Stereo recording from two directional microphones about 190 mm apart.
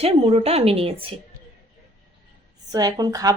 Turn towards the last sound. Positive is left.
turn(degrees=-20)  # may be behind; listen again after turning